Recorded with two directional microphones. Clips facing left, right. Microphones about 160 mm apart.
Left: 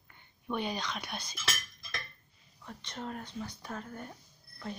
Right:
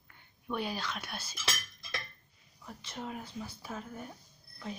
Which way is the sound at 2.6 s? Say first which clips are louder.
Left 1 dB; 5° right (ahead or behind).